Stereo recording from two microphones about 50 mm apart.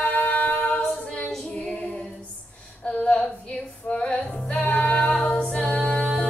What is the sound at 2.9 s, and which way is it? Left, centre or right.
Music, left.